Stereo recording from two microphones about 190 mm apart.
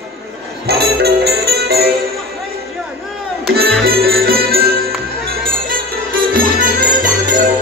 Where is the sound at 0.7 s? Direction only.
55° right (ahead or behind).